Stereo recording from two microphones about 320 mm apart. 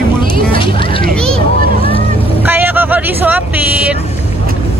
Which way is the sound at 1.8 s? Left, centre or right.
Centre.